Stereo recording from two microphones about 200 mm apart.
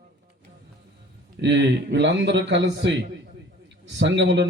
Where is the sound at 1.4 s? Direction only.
60° right (ahead or behind).